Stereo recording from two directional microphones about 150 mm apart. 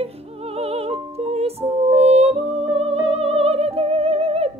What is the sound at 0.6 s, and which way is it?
Music, 40° right (ahead or behind).